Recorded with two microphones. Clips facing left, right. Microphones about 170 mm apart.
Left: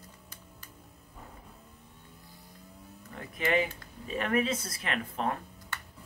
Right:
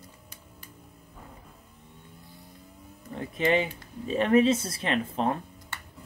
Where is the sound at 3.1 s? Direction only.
25° right (ahead or behind).